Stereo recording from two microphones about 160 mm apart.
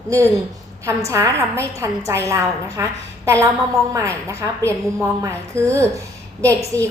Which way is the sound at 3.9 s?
15° right (ahead or behind).